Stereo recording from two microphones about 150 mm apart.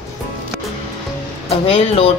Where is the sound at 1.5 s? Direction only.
40° left (ahead or behind).